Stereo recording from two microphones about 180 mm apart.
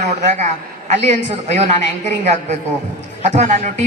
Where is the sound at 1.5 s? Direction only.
40° right (ahead or behind).